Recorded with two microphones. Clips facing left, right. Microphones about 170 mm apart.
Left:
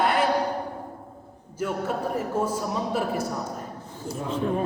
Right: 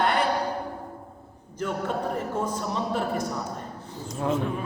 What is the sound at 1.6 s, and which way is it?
A man's voice, 10° left (ahead or behind).